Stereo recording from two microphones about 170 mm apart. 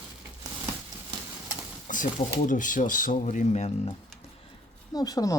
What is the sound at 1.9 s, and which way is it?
Speech, 50° left (ahead or behind).